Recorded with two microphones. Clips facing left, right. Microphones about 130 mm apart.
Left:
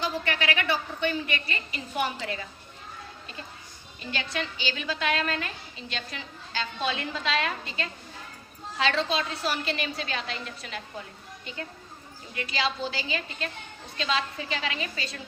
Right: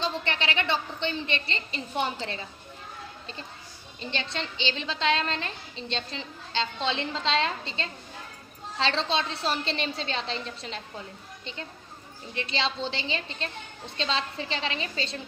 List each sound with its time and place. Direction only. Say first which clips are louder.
0.0 s a woman's voice: left 1 dB; 25° right (ahead or behind)
4.0 s a woman's voice: left 1 dB; 25° right (ahead or behind)
12.3 s a woman's voice: even; 25° right (ahead or behind)